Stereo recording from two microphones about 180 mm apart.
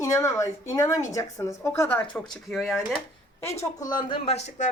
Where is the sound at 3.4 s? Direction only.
15° left (ahead or behind).